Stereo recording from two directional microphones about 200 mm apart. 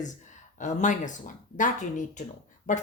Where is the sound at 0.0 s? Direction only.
40° left (ahead or behind).